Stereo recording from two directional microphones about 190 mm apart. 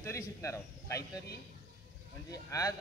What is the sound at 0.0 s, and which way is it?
Speech, 15° left (ahead or behind).